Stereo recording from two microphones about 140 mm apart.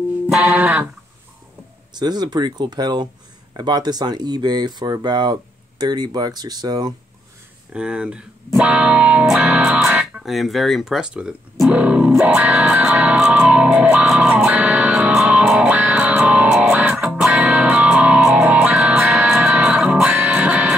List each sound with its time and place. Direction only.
0.3 s music: 10° right (ahead or behind)
2.0 s speech: 30° right (ahead or behind)
7.7 s speech: 5° right (ahead or behind)
11.6 s music: 10° right (ahead or behind)